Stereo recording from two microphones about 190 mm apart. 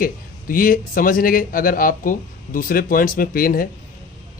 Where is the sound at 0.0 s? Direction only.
45° left (ahead or behind).